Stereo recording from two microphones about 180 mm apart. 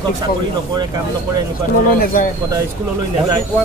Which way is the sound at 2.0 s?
55° left (ahead or behind).